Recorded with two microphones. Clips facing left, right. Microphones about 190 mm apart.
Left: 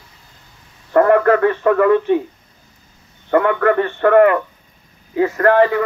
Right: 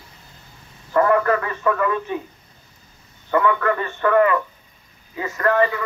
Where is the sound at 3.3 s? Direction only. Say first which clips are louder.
Left 5 dB; 60° left (ahead or behind).